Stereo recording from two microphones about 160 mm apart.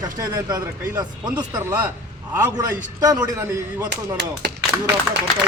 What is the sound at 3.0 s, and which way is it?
Speech, 25° right (ahead or behind).